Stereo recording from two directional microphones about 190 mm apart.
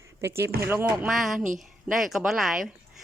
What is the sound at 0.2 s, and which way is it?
Speech, 15° right (ahead or behind).